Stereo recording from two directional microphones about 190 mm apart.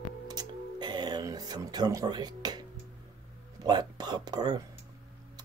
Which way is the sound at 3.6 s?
20° right (ahead or behind).